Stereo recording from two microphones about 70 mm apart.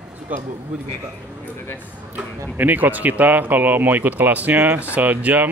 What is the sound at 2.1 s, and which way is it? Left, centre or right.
Speech, right.